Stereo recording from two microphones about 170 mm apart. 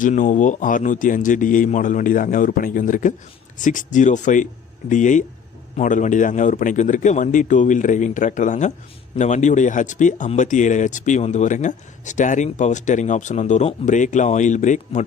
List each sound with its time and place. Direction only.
0.0 s speech: 50° left (ahead or behind)